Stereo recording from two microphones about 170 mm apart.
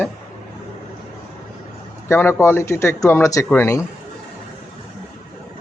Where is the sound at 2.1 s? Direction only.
15° left (ahead or behind).